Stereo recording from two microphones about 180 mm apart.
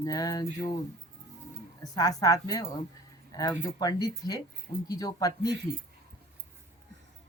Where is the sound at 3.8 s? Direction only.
20° left (ahead or behind).